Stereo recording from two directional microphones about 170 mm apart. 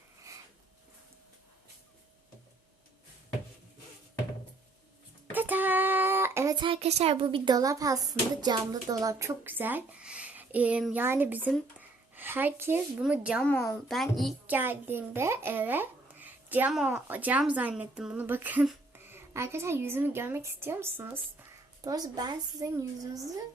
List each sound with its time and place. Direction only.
5.3 s speech: 10° right (ahead or behind)
11.8 s a sound: 10° right (ahead or behind)
13.0 s a child's voice: 5° right (ahead or behind)
13.4 s a woman's voice: 10° left (ahead or behind)
13.8 s a child's voice: centre (ahead or behind)
14.4 s a child's voice: 10° right (ahead or behind)